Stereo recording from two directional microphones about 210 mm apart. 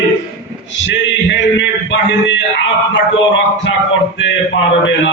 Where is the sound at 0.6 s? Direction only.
60° left (ahead or behind).